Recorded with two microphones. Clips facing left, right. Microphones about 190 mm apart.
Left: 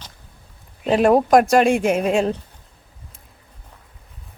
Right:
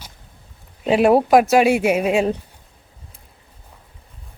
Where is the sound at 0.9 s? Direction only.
5° right (ahead or behind).